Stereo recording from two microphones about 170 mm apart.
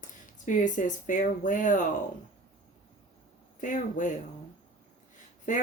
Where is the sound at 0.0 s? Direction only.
50° left (ahead or behind).